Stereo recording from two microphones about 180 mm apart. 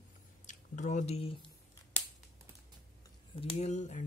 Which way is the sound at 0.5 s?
40° left (ahead or behind).